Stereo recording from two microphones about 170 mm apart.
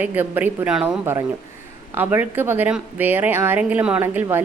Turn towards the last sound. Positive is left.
turn(degrees=-15)  # may be behind; listen again after turning